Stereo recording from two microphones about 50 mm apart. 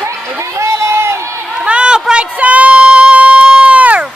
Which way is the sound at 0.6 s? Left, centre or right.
Right.